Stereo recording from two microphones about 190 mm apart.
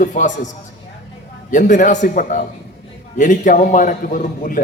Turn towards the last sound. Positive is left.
turn(degrees=45)  # may be behind; listen again after turning